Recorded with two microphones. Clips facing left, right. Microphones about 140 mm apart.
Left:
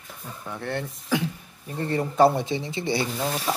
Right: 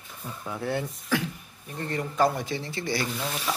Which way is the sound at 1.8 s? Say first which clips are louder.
Left 5 dB; 30° left (ahead or behind).